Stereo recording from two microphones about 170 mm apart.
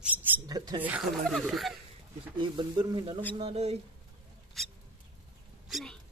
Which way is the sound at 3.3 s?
35° right (ahead or behind).